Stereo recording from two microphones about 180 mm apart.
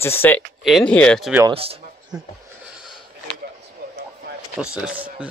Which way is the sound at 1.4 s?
30° right (ahead or behind).